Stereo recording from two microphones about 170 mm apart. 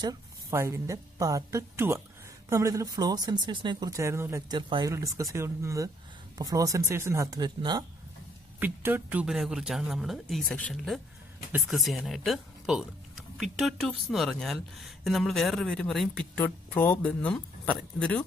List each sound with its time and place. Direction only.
0.0 s a woman's voice: 20° right (ahead or behind)
4.6 s speech: 30° right (ahead or behind)
8.5 s speech: 10° right (ahead or behind); by 18.2 s 5° left (ahead or behind)